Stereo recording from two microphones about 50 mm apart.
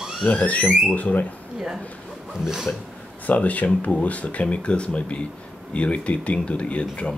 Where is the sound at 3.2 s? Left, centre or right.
Left.